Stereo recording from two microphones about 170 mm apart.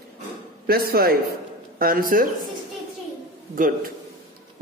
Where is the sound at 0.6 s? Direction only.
65° right (ahead or behind).